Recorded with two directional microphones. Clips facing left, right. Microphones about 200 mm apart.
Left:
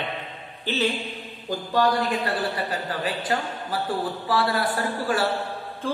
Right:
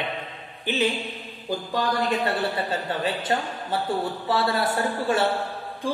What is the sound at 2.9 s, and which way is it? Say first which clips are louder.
A man's voice: right 1 dB; 25° right (ahead or behind).